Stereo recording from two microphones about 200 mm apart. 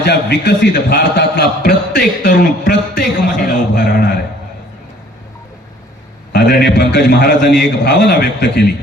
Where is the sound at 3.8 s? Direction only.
55° left (ahead or behind).